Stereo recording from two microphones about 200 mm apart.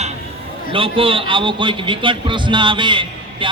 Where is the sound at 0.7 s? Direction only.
25° right (ahead or behind).